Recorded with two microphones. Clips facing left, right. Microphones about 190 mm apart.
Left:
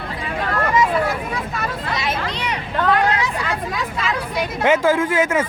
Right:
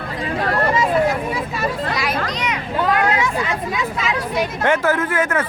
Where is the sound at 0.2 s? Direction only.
35° right (ahead or behind).